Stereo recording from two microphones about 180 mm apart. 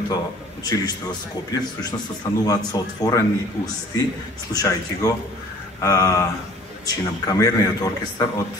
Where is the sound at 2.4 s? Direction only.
20° left (ahead or behind).